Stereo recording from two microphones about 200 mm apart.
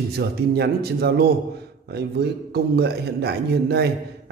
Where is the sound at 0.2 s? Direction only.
55° right (ahead or behind).